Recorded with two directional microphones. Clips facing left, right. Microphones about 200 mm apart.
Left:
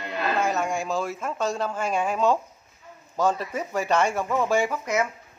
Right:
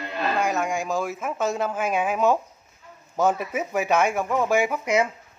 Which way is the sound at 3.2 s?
10° right (ahead or behind).